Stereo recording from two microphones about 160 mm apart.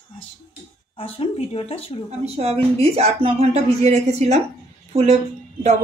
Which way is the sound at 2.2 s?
40° right (ahead or behind).